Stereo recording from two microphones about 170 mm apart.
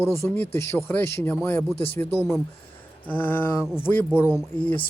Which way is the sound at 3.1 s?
10° left (ahead or behind).